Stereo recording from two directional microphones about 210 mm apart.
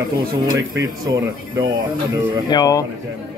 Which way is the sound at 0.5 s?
15° right (ahead or behind).